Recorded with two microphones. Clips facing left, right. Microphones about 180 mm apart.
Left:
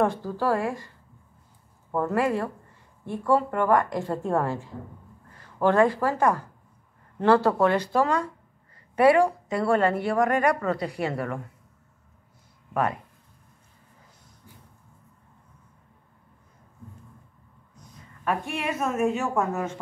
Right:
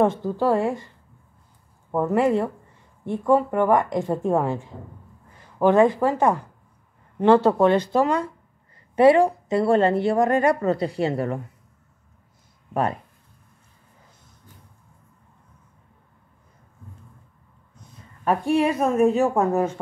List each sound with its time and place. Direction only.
0.0 s speech: 20° right (ahead or behind)
1.9 s a woman's voice: 20° right (ahead or behind)
18.2 s a woman's voice: 30° right (ahead or behind)